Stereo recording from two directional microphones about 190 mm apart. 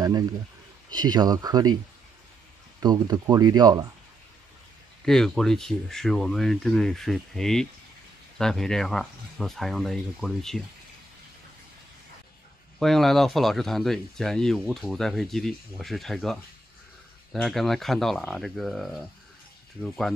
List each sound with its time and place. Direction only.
0.8 s speech: 20° right (ahead or behind)
2.8 s speech: 20° right (ahead or behind)
5.0 s speech: centre (ahead or behind)
12.7 s speech: centre (ahead or behind)